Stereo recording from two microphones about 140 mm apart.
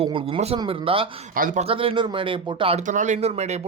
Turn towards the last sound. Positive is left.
turn(degrees=-50)  # may be behind; listen again after turning